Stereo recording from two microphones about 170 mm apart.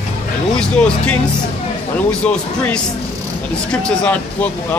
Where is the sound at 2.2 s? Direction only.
5° left (ahead or behind).